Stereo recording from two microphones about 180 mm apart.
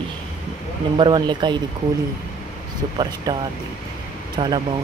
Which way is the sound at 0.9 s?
25° right (ahead or behind).